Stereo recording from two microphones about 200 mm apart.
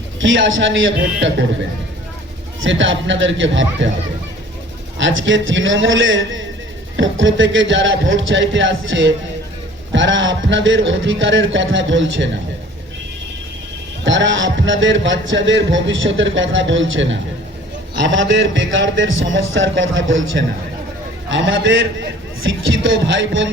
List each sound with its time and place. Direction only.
0.2 s a man's voice: 70° right (ahead or behind)
2.6 s a man's voice: 70° right (ahead or behind)
4.9 s a man's voice: 70° right (ahead or behind)
14.0 s a man's voice: 65° right (ahead or behind)